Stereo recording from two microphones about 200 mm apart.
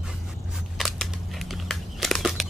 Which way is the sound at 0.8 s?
Centre (ahead or behind).